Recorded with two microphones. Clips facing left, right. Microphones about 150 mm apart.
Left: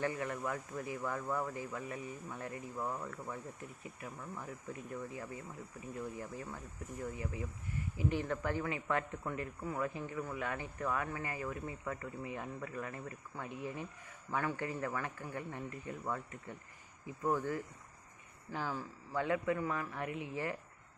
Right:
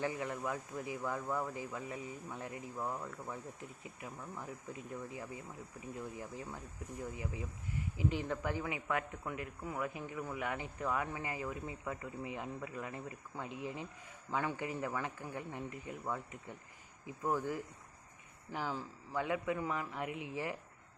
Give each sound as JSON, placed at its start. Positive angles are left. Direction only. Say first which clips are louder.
{"t": 0.0, "sound": "speech", "louder": "left 1 dB", "side_deg": -15}
{"t": 3.6, "sound": "speech", "louder": "left 1 dB", "side_deg": -20}
{"t": 17.2, "sound": "speech", "louder": "left 1 dB", "side_deg": -10}